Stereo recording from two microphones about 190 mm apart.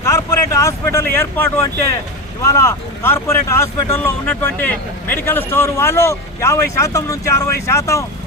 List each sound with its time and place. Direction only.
0.6 s speech: 15° left (ahead or behind)